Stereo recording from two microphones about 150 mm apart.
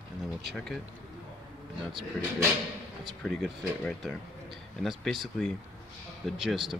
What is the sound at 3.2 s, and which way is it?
A man's voice, centre (ahead or behind).